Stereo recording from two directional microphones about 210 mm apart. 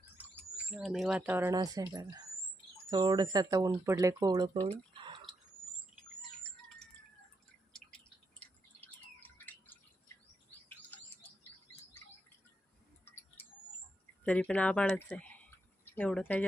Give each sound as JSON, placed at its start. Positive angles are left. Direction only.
{"t": 0.2, "sound": "speech", "side_deg": -5}
{"t": 7.7, "sound": "drip", "side_deg": 5}
{"t": 13.4, "sound": "a sound", "side_deg": 10}
{"t": 14.3, "sound": "speech", "side_deg": 5}